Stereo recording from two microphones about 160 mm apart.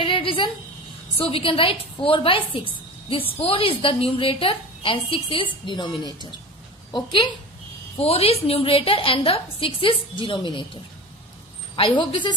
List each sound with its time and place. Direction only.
0.0 s a sound: 35° left (ahead or behind)
1.1 s a woman's voice: 35° left (ahead or behind)
8.0 s a woman's voice: 40° left (ahead or behind)